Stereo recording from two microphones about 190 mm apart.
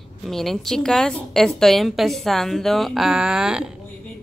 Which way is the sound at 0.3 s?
Centre (ahead or behind).